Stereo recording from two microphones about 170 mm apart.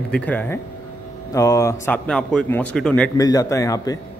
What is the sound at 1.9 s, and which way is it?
A man's voice, 5° left (ahead or behind).